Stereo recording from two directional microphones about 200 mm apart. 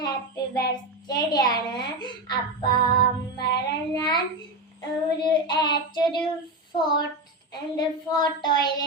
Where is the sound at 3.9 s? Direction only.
20° left (ahead or behind).